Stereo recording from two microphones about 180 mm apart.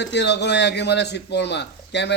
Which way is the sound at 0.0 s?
70° left (ahead or behind).